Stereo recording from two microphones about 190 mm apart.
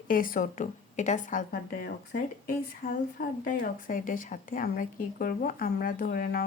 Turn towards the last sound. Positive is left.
turn(degrees=50)  # may be behind; listen again after turning